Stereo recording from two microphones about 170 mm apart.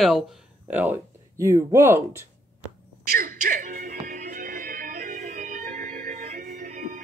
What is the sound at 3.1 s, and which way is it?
Music, 55° right (ahead or behind).